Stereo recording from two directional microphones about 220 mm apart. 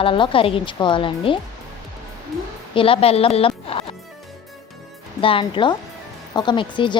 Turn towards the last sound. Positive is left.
turn(degrees=20)  # may be behind; listen again after turning